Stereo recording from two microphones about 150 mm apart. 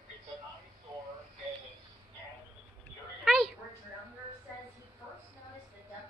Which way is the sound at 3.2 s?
Centre (ahead or behind).